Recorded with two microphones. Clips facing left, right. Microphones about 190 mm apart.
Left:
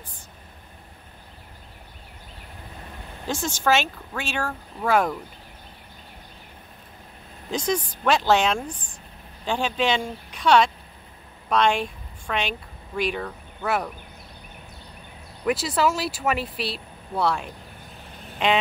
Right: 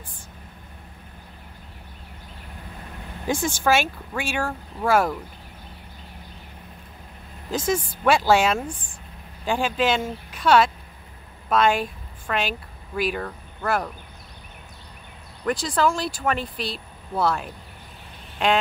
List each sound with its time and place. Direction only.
3.4 s speech: 10° right (ahead or behind)
7.5 s a woman's voice: 5° right (ahead or behind)
15.4 s speech: 5° left (ahead or behind)